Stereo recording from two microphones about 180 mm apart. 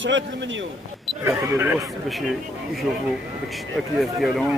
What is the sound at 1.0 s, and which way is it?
Speech, 15° right (ahead or behind).